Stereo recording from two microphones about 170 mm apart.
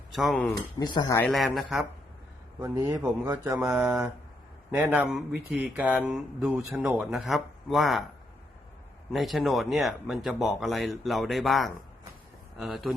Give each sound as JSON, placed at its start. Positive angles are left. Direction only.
{"t": 0.1, "sound": "speech", "side_deg": 0}
{"t": 0.8, "sound": "speech", "side_deg": 20}
{"t": 1.2, "sound": "speech", "side_deg": 5}
{"t": 2.6, "sound": "speech", "side_deg": -15}
{"t": 9.1, "sound": "speech", "side_deg": 0}